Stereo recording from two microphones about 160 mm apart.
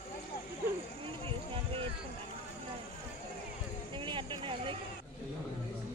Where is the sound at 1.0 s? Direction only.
35° right (ahead or behind).